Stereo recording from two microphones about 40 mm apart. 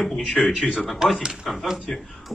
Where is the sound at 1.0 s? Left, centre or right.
Centre.